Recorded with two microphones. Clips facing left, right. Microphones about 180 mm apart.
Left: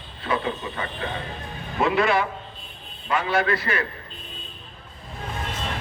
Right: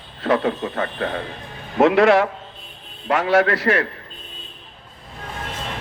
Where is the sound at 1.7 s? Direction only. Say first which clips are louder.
Right 7 dB; 80° right.